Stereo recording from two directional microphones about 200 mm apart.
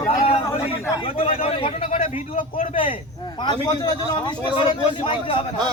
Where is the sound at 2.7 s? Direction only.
25° left (ahead or behind).